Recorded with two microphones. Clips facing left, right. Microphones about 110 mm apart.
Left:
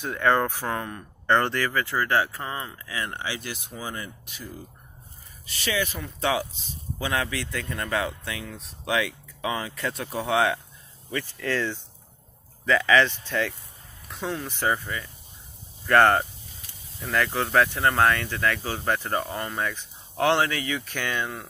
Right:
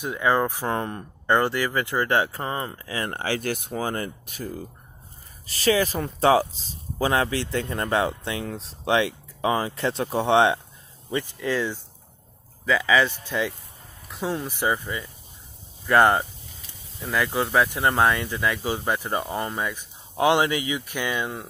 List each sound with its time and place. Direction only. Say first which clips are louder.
0.0 s speech: even; 10° right (ahead or behind)
0.7 s speech: right 3 dB; 30° right (ahead or behind)
1.2 s speech: right 1 dB; 10° right (ahead or behind); by 3.1 s 35° right (ahead or behind)
3.1 s speech: right 7 dB; 50° right (ahead or behind)
5.5 s speech: right 7 dB; 40° right (ahead or behind); by 21.5 s 15° right (ahead or behind)